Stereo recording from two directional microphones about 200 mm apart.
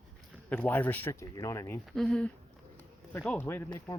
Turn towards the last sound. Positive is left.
turn(degrees=15)  # may be behind; listen again after turning